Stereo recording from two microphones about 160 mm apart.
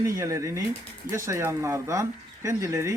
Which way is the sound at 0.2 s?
20° right (ahead or behind).